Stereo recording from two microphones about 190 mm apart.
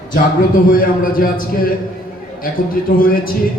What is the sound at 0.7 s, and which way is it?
Speech, 50° left (ahead or behind).